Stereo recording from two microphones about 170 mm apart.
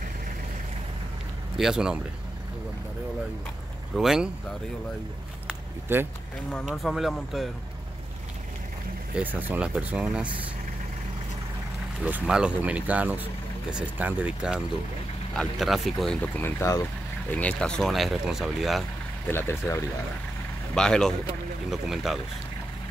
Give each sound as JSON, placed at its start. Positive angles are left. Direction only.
{"t": 1.6, "sound": "speech", "side_deg": -5}
{"t": 3.9, "sound": "speech", "side_deg": -5}
{"t": 5.5, "sound": "a sound", "side_deg": -15}
{"t": 6.5, "sound": "speech", "side_deg": 0}
{"t": 9.1, "sound": "speech", "side_deg": -10}
{"t": 12.0, "sound": "speech", "side_deg": -5}
{"t": 19.2, "sound": "speech", "side_deg": 15}
{"t": 20.7, "sound": "speech", "side_deg": 5}